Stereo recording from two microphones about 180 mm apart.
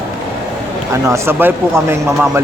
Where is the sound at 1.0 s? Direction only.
15° right (ahead or behind).